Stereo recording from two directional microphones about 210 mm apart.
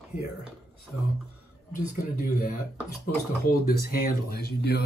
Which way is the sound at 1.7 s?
45° left (ahead or behind).